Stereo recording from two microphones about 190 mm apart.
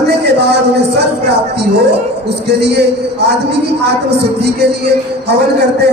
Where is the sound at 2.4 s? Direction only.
60° right (ahead or behind).